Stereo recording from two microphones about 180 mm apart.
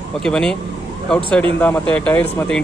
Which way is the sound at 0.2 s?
5° left (ahead or behind).